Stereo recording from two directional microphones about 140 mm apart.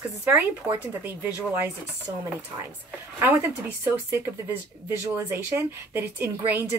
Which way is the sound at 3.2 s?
15° right (ahead or behind).